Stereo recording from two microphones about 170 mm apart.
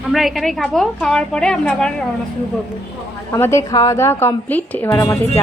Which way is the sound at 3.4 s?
15° left (ahead or behind).